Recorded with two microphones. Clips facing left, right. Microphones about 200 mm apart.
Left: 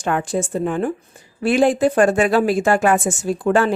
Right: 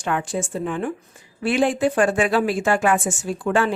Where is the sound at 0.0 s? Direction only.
40° left (ahead or behind).